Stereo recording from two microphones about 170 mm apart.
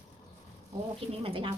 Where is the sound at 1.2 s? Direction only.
30° right (ahead or behind).